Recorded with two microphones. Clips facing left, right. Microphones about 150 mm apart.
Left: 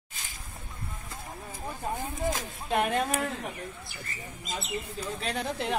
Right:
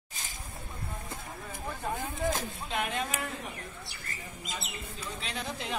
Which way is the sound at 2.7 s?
45° left (ahead or behind).